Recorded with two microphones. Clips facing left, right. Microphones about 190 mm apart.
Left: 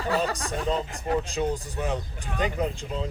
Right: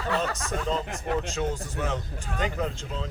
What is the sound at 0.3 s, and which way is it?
Speech, 35° left (ahead or behind).